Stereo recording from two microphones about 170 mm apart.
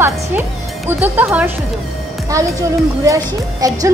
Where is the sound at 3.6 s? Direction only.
20° right (ahead or behind).